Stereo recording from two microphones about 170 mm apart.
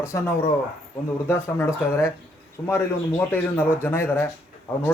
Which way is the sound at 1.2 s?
15° left (ahead or behind).